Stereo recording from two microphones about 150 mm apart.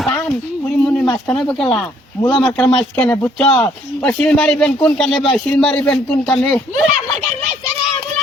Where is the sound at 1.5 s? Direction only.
5° left (ahead or behind).